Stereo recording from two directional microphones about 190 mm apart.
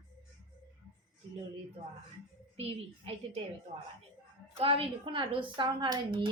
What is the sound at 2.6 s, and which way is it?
Speech, 30° right (ahead or behind).